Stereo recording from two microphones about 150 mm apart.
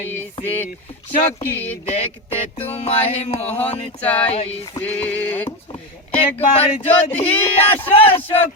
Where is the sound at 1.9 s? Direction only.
40° left (ahead or behind).